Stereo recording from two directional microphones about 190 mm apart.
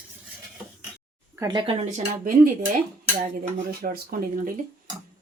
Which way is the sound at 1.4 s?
20° right (ahead or behind).